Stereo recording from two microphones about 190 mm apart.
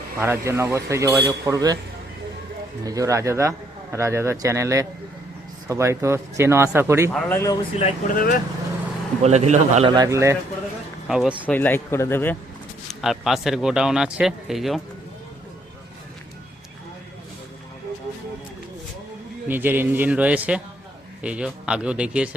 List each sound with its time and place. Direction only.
0.2 s speech: 15° right (ahead or behind)
2.8 s speech: 15° right (ahead or behind)
7.1 s speech: 5° left (ahead or behind)
7.8 s speech: 30° left (ahead or behind)
8.1 s speech: 45° left (ahead or behind)
9.2 s a man's voice: 35° right (ahead or behind)
9.9 s speech: 20° right (ahead or behind)
11.1 s speech: 5° right (ahead or behind)
11.4 s speech: 10° left (ahead or behind)
12.9 s speech: centre (ahead or behind)
19.5 s speech: 10° right (ahead or behind)